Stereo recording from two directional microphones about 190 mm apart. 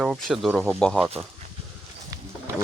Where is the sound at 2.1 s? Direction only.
15° right (ahead or behind).